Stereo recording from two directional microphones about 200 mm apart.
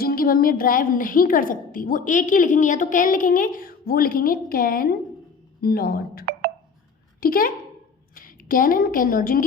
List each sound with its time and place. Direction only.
0.0 s a woman's voice: 45° left (ahead or behind)